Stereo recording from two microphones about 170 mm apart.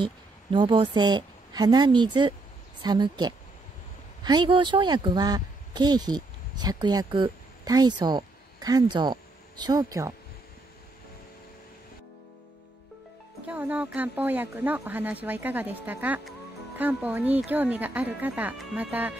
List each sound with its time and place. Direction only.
0.0 s a woman's voice: 30° right (ahead or behind)
13.5 s speech: 10° right (ahead or behind)